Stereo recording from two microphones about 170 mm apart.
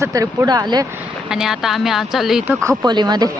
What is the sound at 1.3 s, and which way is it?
Speech, 5° right (ahead or behind).